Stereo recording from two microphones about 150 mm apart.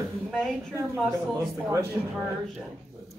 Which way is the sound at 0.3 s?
5° left (ahead or behind).